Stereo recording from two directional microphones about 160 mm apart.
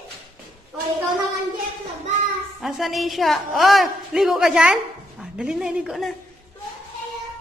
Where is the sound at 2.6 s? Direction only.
Centre (ahead or behind).